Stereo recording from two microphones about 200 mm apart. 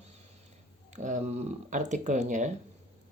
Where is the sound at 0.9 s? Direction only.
35° right (ahead or behind).